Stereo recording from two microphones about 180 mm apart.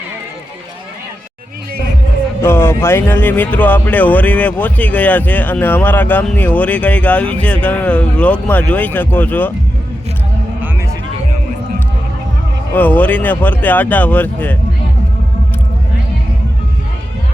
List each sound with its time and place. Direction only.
2.4 s speech: 15° left (ahead or behind)
12.7 s speech: 10° left (ahead or behind)